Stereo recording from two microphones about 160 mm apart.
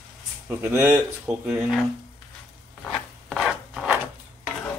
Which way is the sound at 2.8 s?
Centre (ahead or behind).